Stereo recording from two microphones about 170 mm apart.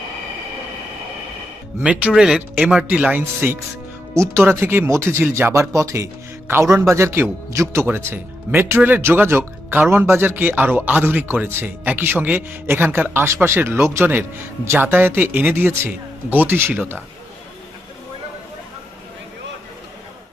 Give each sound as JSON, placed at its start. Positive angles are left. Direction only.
{"t": 1.8, "sound": "speech", "side_deg": -5}